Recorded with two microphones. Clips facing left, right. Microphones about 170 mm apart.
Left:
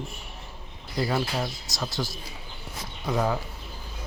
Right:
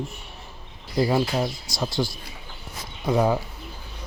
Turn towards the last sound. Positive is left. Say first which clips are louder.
# right 5 dB
turn(degrees=-25)  # may be behind; listen again after turning